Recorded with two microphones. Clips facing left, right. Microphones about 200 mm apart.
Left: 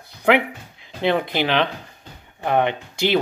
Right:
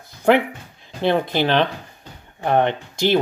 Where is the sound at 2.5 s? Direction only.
15° left (ahead or behind).